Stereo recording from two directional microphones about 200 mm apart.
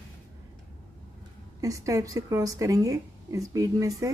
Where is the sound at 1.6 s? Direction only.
15° right (ahead or behind).